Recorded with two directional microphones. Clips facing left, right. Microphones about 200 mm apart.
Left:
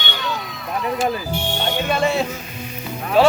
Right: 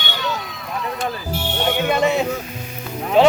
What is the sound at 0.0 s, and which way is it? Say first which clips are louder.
Run: right 1 dB; centre (ahead or behind).